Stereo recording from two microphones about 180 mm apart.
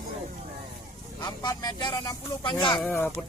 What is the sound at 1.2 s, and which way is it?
Speech, 20° left (ahead or behind).